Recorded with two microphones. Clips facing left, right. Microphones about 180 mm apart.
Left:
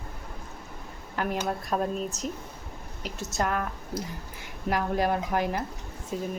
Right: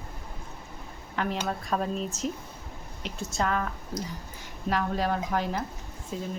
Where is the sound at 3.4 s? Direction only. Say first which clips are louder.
Even; 10° left (ahead or behind).